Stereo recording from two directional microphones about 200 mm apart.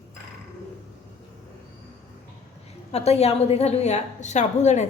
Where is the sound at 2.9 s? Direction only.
30° left (ahead or behind).